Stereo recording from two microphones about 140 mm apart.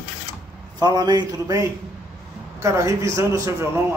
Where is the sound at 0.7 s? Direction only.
30° right (ahead or behind).